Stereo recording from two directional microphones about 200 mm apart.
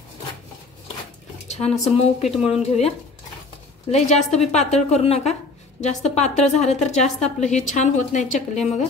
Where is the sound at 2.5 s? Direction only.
30° left (ahead or behind).